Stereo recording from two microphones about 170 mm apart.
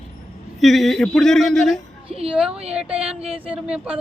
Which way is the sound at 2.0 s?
35° right (ahead or behind).